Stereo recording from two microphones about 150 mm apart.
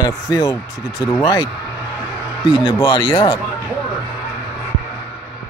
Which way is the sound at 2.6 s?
20° left (ahead or behind).